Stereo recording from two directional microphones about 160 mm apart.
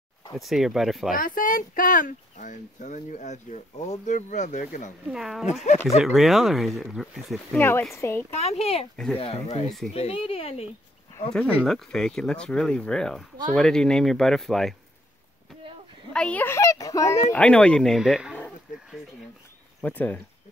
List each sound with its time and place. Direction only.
0.3 s speech: centre (ahead or behind)
1.1 s speech: 60° left (ahead or behind)
5.1 s speech: centre (ahead or behind)
7.9 s a woman's voice: 15° left (ahead or behind)
8.4 s speech: 40° left (ahead or behind)
8.9 s speech: 5° left (ahead or behind)
9.2 s speech: 40° left (ahead or behind)
11.6 s speech: 5° left (ahead or behind)
16.1 s a sound: 5° left (ahead or behind)
17.3 s speech: 5° left (ahead or behind)
19.8 s a woman's voice: 10° left (ahead or behind)